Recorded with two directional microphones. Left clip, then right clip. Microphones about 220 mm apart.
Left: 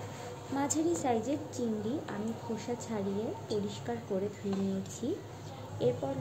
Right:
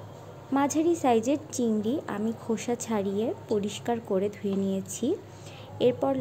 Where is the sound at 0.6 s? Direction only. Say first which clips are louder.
Right 7 dB; 40° right (ahead or behind).